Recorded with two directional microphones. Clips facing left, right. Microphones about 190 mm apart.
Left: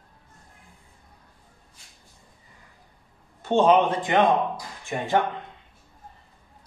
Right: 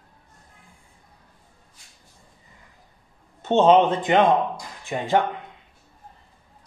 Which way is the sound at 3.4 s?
25° right (ahead or behind).